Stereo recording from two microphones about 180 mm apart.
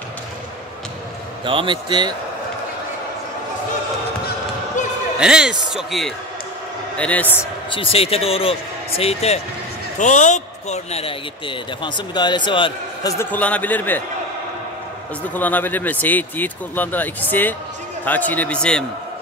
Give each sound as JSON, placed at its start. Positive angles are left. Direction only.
{"t": 1.4, "sound": "speech", "side_deg": -30}
{"t": 5.2, "sound": "speech", "side_deg": -5}
{"t": 7.7, "sound": "speech", "side_deg": 30}
{"t": 13.2, "sound": "speech", "side_deg": 10}
{"t": 15.3, "sound": "speech", "side_deg": 10}